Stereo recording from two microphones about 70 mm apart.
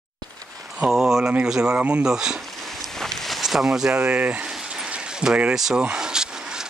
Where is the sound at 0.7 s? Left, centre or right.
Centre.